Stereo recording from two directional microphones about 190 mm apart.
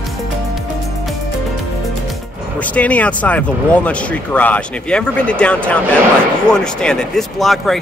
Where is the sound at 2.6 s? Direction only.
10° left (ahead or behind).